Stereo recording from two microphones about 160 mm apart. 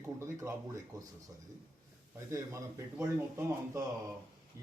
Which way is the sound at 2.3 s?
20° right (ahead or behind).